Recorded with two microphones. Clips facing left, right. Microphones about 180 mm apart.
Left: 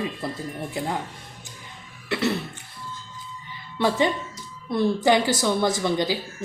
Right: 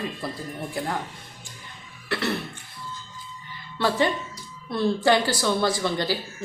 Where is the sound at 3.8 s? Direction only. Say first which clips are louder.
Left 1 dB; 20° left (ahead or behind).